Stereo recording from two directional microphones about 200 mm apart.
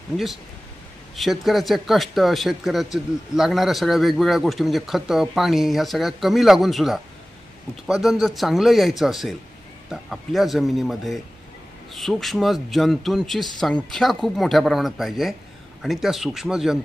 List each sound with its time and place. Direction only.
1.1 s a man's voice: centre (ahead or behind)